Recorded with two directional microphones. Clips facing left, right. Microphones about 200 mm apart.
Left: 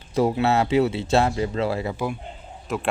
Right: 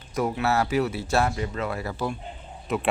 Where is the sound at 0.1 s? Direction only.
25° left (ahead or behind).